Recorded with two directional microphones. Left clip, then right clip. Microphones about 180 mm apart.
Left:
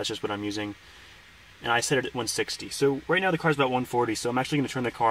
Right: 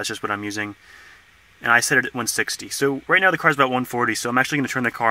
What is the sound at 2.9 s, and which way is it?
Speech, 15° right (ahead or behind).